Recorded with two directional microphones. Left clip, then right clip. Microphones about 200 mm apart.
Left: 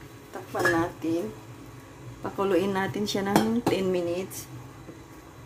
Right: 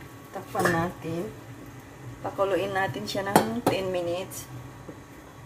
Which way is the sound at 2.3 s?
35° left (ahead or behind).